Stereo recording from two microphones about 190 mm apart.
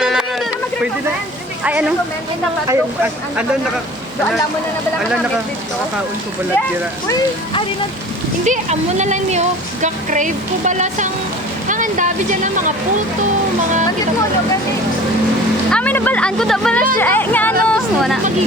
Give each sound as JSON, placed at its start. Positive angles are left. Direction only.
{"t": 0.0, "sound": "a sound", "side_deg": -5}
{"t": 1.6, "sound": "speech", "side_deg": -5}
{"t": 8.4, "sound": "speech", "side_deg": -40}
{"t": 15.7, "sound": "speech", "side_deg": 10}